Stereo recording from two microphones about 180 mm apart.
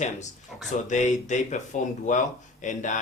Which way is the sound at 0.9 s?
40° left (ahead or behind).